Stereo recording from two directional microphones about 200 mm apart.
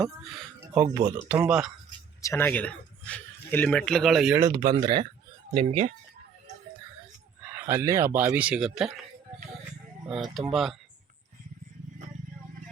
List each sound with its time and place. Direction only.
0.9 s speech: 20° right (ahead or behind)
1.3 s speech: 5° right (ahead or behind)
2.2 s speech: 10° left (ahead or behind)
4.4 s speech: 20° right (ahead or behind)
5.5 s speech: 35° right (ahead or behind)
7.5 s speech: 15° right (ahead or behind)
10.1 s speech: centre (ahead or behind)